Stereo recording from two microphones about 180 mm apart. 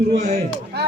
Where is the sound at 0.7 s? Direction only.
65° right (ahead or behind).